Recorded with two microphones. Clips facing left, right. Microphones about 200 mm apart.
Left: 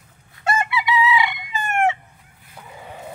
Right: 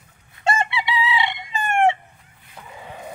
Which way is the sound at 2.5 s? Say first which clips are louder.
Even; 5° left (ahead or behind).